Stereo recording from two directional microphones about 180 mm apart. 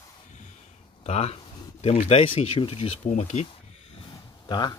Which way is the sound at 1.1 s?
35° left (ahead or behind).